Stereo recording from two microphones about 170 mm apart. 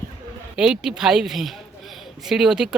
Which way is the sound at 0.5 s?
5° right (ahead or behind).